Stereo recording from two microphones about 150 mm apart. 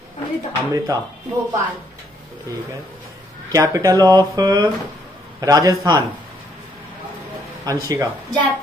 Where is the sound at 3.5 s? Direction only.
25° right (ahead or behind).